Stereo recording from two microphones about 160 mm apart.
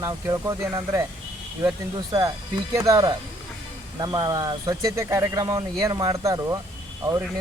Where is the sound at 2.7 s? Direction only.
20° right (ahead or behind).